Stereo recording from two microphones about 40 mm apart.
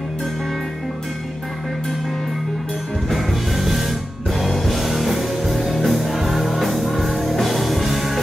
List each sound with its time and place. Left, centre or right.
3.1 s music: centre